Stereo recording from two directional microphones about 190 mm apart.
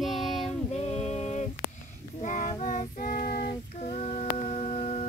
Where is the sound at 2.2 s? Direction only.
40° left (ahead or behind).